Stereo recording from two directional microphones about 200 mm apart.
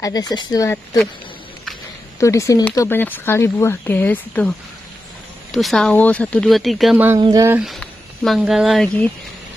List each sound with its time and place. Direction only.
0.0 s speech: 20° left (ahead or behind)
2.1 s speech: 15° left (ahead or behind); by 7.2 s 5° right (ahead or behind)
7.2 s speech: 20° right (ahead or behind)
7.5 s speech: centre (ahead or behind)